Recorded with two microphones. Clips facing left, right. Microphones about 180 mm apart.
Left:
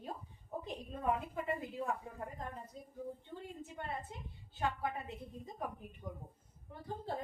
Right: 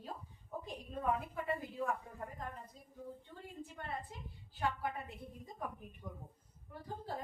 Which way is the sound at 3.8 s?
20° left (ahead or behind).